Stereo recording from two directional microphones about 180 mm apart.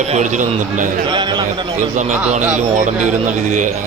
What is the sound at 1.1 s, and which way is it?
Speech, 25° right (ahead or behind).